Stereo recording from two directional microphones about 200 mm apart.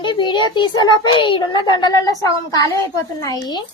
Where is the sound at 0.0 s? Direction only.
25° left (ahead or behind).